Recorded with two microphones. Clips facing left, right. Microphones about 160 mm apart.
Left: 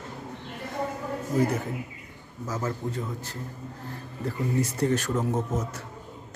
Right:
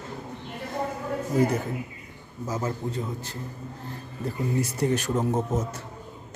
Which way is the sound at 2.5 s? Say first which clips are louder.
Right 1 dB; 15° right (ahead or behind).